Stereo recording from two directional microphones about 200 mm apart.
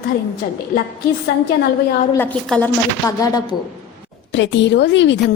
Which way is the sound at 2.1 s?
10° left (ahead or behind).